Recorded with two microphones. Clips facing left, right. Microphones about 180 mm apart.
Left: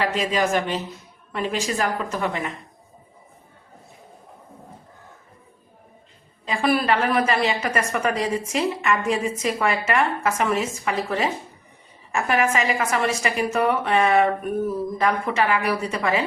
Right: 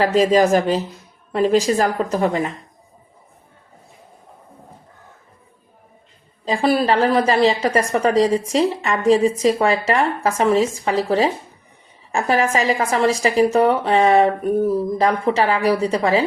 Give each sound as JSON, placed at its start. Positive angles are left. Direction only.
{"t": 0.0, "sound": "a woman's voice", "side_deg": -35}
{"t": 6.4, "sound": "a woman's voice", "side_deg": -30}